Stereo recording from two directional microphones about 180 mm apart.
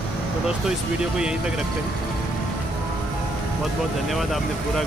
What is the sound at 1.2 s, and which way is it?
Speech, 5° right (ahead or behind).